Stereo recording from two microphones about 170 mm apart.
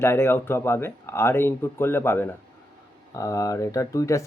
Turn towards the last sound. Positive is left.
turn(degrees=20)  # may be behind; listen again after turning